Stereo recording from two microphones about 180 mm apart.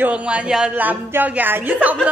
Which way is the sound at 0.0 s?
5° right (ahead or behind).